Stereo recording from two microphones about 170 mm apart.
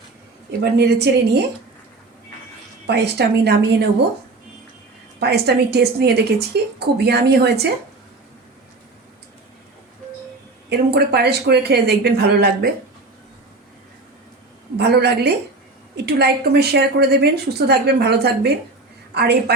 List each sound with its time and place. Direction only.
0.6 s a woman's voice: 75° right (ahead or behind)
2.8 s a woman's voice: 80° right
5.2 s a woman's voice: 75° right (ahead or behind)
10.7 s a woman's voice: 75° right (ahead or behind)
14.8 s a woman's voice: 75° right (ahead or behind)